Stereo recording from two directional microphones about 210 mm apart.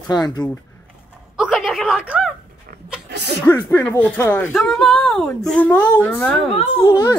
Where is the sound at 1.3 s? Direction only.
Centre (ahead or behind).